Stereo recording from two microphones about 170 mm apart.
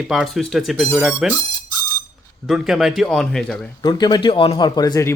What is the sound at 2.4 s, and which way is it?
A man's voice, centre (ahead or behind).